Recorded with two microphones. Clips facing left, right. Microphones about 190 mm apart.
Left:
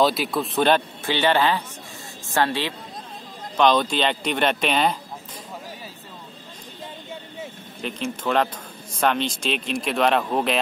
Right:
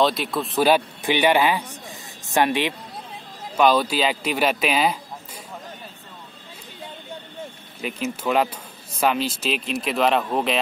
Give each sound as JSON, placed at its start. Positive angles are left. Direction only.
{"t": 0.0, "sound": "a man's voice", "side_deg": 0}
{"t": 7.8, "sound": "a man's voice", "side_deg": -5}